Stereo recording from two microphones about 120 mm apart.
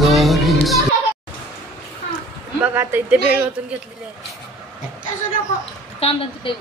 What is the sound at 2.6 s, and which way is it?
Speech, 20° right (ahead or behind).